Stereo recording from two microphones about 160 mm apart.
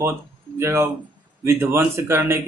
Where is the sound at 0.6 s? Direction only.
15° right (ahead or behind).